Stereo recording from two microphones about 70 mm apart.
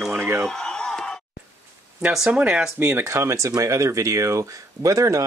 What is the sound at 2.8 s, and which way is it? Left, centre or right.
Speech, right.